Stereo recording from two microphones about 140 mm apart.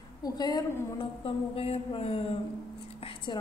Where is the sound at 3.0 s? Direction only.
35° left (ahead or behind).